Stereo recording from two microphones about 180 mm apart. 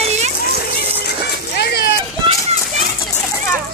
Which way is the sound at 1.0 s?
65° left (ahead or behind).